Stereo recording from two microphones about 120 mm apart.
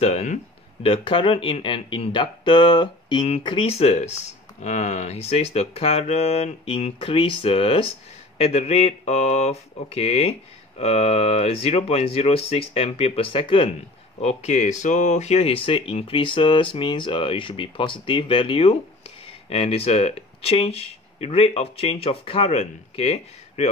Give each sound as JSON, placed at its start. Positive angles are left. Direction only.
{"t": 0.0, "sound": "speech", "side_deg": 65}
{"t": 0.8, "sound": "speech", "side_deg": 45}
{"t": 3.4, "sound": "speech", "side_deg": 50}
{"t": 8.4, "sound": "speech", "side_deg": 60}
{"t": 14.2, "sound": "speech", "side_deg": 75}